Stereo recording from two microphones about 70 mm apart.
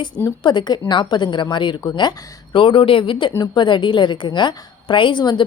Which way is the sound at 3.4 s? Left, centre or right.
Left.